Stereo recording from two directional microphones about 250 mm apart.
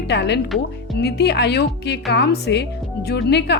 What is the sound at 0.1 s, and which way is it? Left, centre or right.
A woman's voice, left.